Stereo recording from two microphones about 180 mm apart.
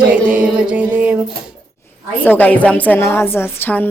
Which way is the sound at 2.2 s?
10° left (ahead or behind).